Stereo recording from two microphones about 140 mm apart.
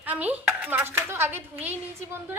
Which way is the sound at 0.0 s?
10° right (ahead or behind).